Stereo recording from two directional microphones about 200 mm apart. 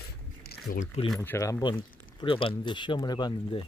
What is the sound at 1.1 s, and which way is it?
Speech, 15° left (ahead or behind).